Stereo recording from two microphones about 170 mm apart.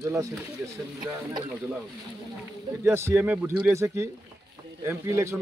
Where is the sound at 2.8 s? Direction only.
15° right (ahead or behind).